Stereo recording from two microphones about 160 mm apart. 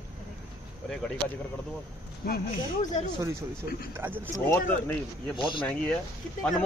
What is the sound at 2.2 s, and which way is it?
Speech, 70° left (ahead or behind).